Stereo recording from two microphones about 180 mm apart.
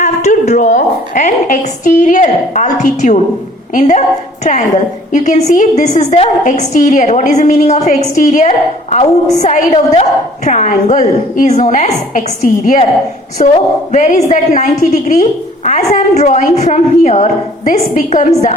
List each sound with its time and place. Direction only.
0.0 s a woman's voice: 40° left (ahead or behind)
5.1 s a woman's voice: 40° left (ahead or behind)